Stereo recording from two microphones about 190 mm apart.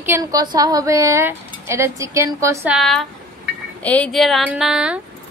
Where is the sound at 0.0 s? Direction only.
15° right (ahead or behind).